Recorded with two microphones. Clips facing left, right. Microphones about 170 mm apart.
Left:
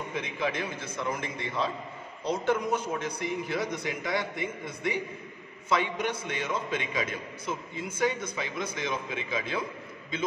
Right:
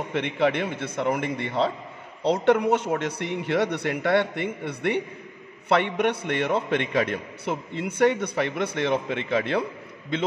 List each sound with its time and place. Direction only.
0.1 s a man's voice: 70° right (ahead or behind)